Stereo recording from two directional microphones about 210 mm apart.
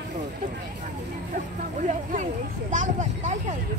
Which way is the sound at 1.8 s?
35° right (ahead or behind).